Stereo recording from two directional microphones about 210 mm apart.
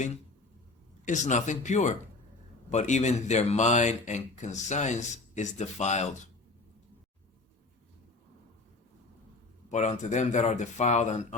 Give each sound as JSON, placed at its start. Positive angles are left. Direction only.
{"t": 1.0, "sound": "speech", "side_deg": 35}
{"t": 9.6, "sound": "speech", "side_deg": 35}